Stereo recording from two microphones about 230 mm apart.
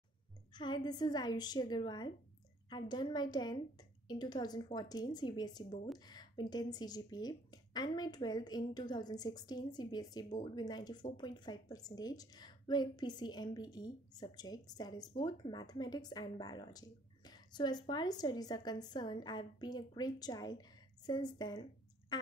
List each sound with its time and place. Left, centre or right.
0.5 s a woman's voice: centre